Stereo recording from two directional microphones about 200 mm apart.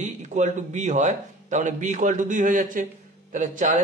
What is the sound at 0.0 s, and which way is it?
A man's voice, 35° right (ahead or behind).